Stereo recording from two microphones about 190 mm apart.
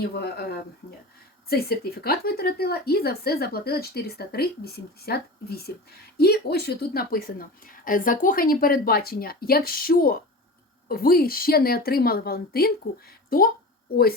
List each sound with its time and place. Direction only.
0.2 s a woman's voice: 55° left (ahead or behind)